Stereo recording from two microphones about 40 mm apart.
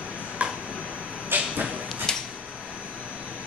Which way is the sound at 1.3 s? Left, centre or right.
Right.